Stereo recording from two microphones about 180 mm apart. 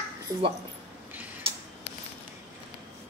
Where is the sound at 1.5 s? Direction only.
30° right (ahead or behind).